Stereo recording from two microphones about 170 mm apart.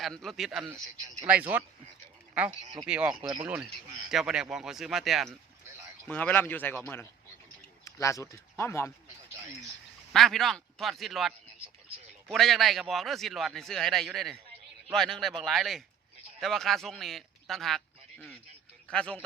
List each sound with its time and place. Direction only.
0.0 s a man's voice: centre (ahead or behind)
10.1 s a man's voice: centre (ahead or behind)